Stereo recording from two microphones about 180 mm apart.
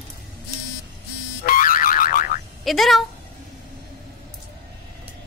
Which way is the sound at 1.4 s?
50° left (ahead or behind).